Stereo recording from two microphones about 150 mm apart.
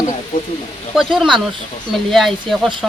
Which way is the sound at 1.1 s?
Centre (ahead or behind).